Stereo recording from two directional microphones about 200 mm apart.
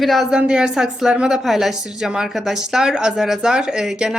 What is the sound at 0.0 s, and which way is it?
Speech, centre (ahead or behind).